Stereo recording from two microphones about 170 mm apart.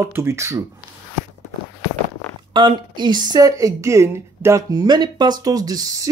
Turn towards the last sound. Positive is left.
turn(degrees=-20)  # may be behind; listen again after turning